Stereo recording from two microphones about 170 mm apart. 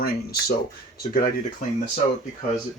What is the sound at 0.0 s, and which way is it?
Speech, 65° left (ahead or behind).